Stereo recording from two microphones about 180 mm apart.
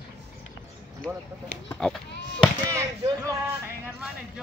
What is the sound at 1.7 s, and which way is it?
Sheep, 5° left (ahead or behind).